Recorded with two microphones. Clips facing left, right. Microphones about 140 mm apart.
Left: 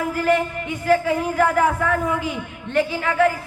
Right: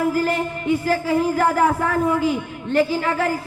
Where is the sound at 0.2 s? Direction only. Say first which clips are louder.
Left 2 dB; 30° right (ahead or behind).